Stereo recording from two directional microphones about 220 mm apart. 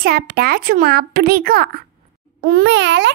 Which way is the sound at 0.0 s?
45° right (ahead or behind).